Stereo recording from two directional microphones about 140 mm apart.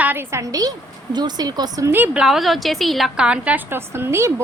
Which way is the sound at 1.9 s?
15° right (ahead or behind).